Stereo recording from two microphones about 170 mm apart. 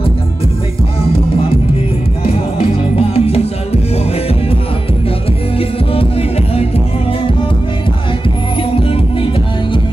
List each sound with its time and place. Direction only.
3.0 s music: 35° left (ahead or behind)
8.7 s music: 30° left (ahead or behind)